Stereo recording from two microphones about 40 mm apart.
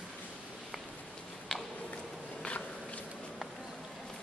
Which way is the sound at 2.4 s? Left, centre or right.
Left.